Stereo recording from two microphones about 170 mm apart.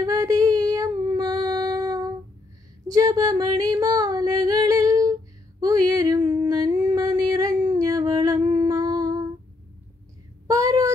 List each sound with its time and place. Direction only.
0.0 s female singing: 20° right (ahead or behind)
5.6 s a sound: 20° right (ahead or behind)
10.4 s child singing: 20° right (ahead or behind)